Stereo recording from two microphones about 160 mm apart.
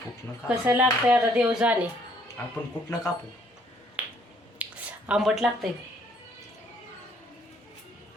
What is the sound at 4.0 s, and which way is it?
Finger snapping, 10° right (ahead or behind).